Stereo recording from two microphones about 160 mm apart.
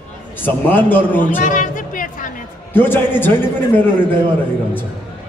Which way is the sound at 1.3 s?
55° left (ahead or behind).